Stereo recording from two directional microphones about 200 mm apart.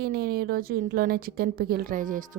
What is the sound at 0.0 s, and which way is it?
A woman's voice, 50° right (ahead or behind).